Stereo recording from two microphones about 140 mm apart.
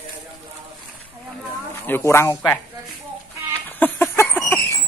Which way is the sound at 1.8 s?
15° left (ahead or behind).